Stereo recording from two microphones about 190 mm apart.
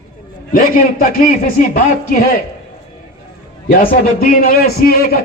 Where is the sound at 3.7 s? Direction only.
50° left (ahead or behind).